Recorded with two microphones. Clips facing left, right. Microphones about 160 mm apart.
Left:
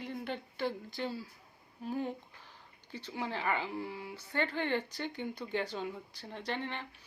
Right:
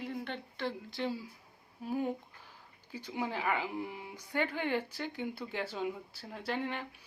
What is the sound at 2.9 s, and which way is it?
Speech, 10° right (ahead or behind).